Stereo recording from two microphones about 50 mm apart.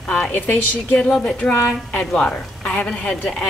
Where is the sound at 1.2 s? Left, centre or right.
Centre.